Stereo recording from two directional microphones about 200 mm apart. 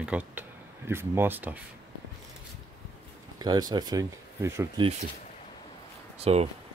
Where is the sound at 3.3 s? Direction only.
20° right (ahead or behind).